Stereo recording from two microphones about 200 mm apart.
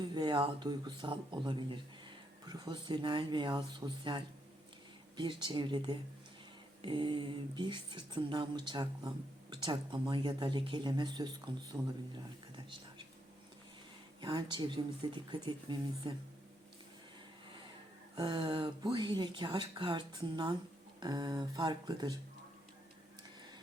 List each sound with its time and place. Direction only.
0.0 s speech: 20° right (ahead or behind)
14.2 s speech: 20° right (ahead or behind)
18.1 s speech: 20° right (ahead or behind)